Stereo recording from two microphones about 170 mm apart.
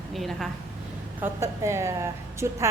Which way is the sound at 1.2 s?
15° right (ahead or behind).